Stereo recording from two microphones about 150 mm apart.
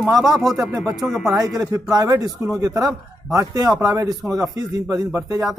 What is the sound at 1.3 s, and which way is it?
A man's voice, 20° right (ahead or behind).